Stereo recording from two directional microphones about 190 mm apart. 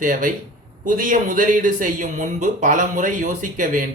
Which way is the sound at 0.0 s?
45° right (ahead or behind).